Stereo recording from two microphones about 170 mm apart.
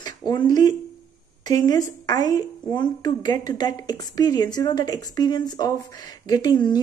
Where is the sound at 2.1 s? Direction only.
20° left (ahead or behind).